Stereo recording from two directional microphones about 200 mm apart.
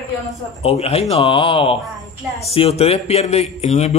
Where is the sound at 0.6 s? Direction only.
30° left (ahead or behind).